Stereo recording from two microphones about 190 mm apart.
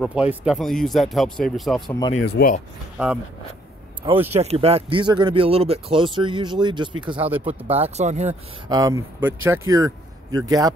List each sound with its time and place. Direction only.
0.0 s speech: 10° right (ahead or behind)
1.9 s speech: 20° left (ahead or behind)
2.1 s speech: 60° left (ahead or behind)
3.0 s speech: 5° right (ahead or behind)
4.0 s speech: 20° right (ahead or behind)
4.4 s speech: 35° right (ahead or behind)
7.2 s speech: 10° right (ahead or behind)
7.4 s speech: 30° right (ahead or behind)
8.6 s speech: 20° right (ahead or behind)